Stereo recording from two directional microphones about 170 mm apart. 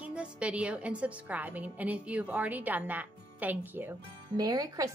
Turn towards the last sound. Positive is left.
turn(degrees=-20)  # may be behind; listen again after turning